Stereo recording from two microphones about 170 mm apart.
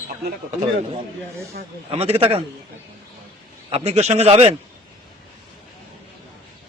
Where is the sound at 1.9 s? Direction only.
35° right (ahead or behind).